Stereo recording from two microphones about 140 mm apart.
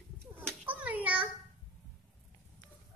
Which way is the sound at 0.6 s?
10° right (ahead or behind).